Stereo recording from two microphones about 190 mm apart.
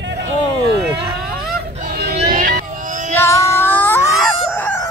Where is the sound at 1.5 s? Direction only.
55° right (ahead or behind).